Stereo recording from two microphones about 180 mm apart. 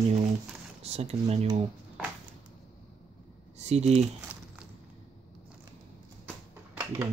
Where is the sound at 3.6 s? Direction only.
35° right (ahead or behind).